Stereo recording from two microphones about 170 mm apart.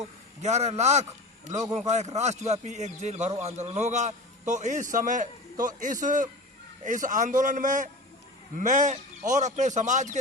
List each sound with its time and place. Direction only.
0.4 s a man's voice: 40° right (ahead or behind)